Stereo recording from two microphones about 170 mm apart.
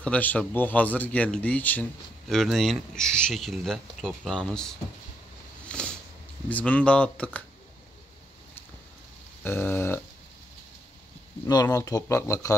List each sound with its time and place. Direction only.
0.0 s speech: 10° left (ahead or behind)
5.7 s a sound: 5° left (ahead or behind)
6.5 s speech: 10° left (ahead or behind)
9.4 s speech: 10° left (ahead or behind)
11.4 s speech: 20° left (ahead or behind)